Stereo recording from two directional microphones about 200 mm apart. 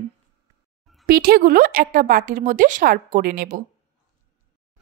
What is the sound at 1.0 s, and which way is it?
A woman's voice, 45° right (ahead or behind).